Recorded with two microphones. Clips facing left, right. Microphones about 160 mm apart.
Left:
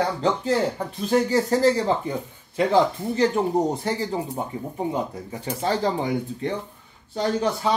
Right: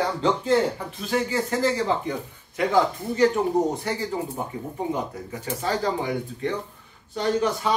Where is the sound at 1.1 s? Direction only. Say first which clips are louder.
Left 5 dB; 35° left (ahead or behind).